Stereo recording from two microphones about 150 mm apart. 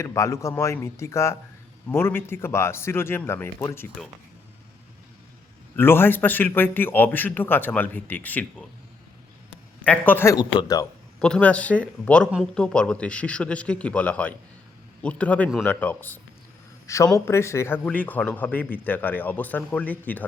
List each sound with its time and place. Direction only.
0.0 s a man's voice: 20° left (ahead or behind)
5.7 s a man's voice: 15° left (ahead or behind)
9.8 s a man's voice: 10° left (ahead or behind)
10.3 s speech: 25° left (ahead or behind)
11.2 s a man's voice: 5° left (ahead or behind)